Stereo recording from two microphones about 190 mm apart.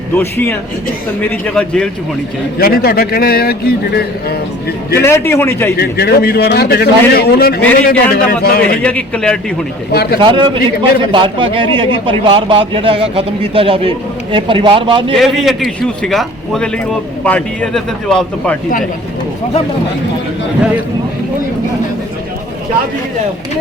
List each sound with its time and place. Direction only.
0.2 s a man's voice: 10° left (ahead or behind)
2.6 s a man's voice: 55° left (ahead or behind)
4.9 s a man's voice: 15° left (ahead or behind)
5.7 s a man's voice: 55° left (ahead or behind)
8.8 s a man's voice: 5° left (ahead or behind)
9.9 s a man's voice: 55° left (ahead or behind)
10.2 s a man's voice: 25° right (ahead or behind)
15.1 s a man's voice: centre (ahead or behind)